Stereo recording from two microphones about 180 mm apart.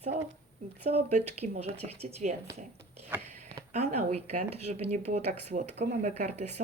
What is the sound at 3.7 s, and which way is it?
Speech, 35° right (ahead or behind).